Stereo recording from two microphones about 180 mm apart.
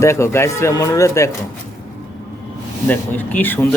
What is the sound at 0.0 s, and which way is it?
Speech, 15° left (ahead or behind).